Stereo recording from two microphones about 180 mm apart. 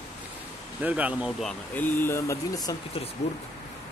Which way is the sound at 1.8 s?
10° left (ahead or behind).